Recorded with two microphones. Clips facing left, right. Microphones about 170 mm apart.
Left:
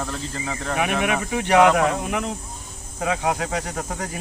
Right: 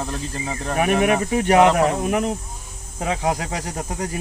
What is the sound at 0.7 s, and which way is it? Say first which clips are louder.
Speech: right 5 dB; 40° right (ahead or behind).